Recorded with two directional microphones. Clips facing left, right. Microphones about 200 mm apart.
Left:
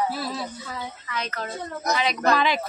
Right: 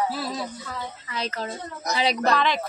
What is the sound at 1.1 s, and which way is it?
A woman's voice, 30° right (ahead or behind).